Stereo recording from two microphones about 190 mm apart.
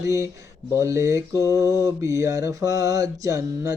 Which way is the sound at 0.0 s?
15° right (ahead or behind).